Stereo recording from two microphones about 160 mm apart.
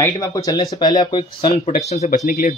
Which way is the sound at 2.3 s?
60° left (ahead or behind).